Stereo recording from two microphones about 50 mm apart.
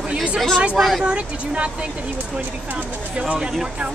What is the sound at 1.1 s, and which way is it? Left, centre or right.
Speech, right.